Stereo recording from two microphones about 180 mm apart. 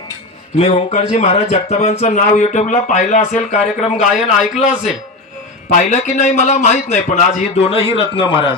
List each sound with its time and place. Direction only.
0.6 s speech: 35° left (ahead or behind)
4.0 s a man's voice: centre (ahead or behind)
5.7 s speech: 40° left (ahead or behind)